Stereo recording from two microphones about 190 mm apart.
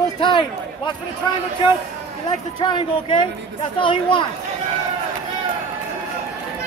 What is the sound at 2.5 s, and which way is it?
Speech, 25° left (ahead or behind).